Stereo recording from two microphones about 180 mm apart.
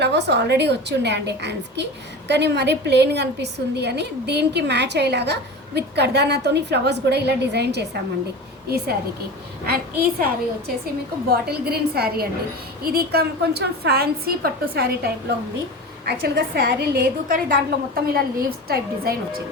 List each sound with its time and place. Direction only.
0.0 s a woman's voice: 70° right (ahead or behind)
11.3 s a woman's voice: 60° right (ahead or behind)